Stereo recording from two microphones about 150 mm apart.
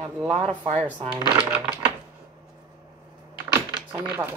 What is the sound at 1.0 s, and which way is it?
Speech, 30° right (ahead or behind).